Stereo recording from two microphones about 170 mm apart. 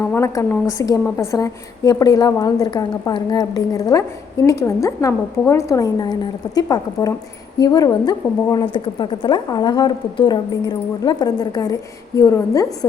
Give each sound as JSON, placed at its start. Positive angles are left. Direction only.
{"t": 0.0, "sound": "a woman's voice", "side_deg": 15}